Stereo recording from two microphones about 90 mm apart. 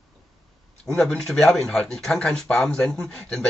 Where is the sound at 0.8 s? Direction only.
10° left (ahead or behind).